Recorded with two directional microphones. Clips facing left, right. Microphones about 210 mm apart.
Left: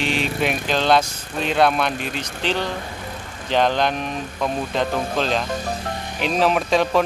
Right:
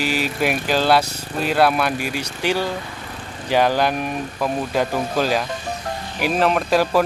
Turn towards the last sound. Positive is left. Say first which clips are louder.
# right 1 dB
turn(degrees=-5)  # may be behind; listen again after turning